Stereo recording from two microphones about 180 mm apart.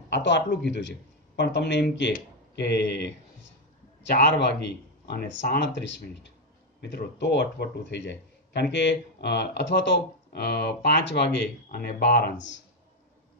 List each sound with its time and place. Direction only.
0.1 s speech: 75° left (ahead or behind)
6.8 s speech: 70° left (ahead or behind)